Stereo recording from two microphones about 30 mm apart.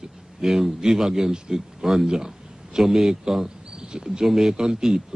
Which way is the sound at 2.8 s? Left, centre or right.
Centre.